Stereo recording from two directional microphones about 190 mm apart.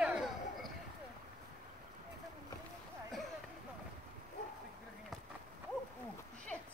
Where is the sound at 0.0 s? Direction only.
5° right (ahead or behind).